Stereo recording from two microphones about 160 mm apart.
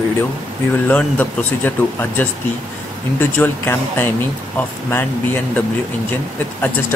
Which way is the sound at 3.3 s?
15° left (ahead or behind).